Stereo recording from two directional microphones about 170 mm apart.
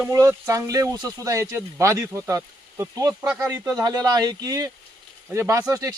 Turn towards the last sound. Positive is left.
turn(degrees=-15)  # may be behind; listen again after turning